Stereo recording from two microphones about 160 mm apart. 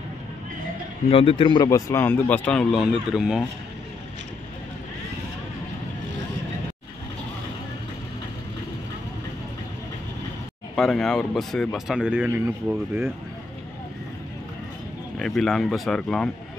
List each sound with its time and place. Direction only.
1.1 s speech: 35° left (ahead or behind); by 3.4 s centre (ahead or behind)
10.8 s speech: 5° left (ahead or behind); by 13.1 s 15° right (ahead or behind)
15.1 s speech: centre (ahead or behind)